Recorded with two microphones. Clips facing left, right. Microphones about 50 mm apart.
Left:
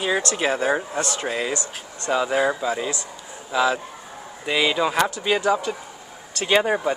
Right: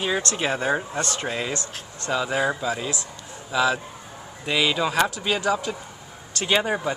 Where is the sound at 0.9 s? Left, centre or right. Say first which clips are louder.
Left 2 dB; centre.